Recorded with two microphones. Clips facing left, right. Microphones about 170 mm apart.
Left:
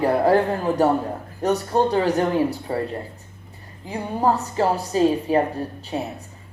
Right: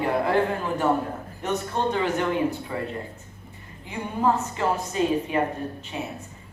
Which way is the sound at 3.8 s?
35° left (ahead or behind).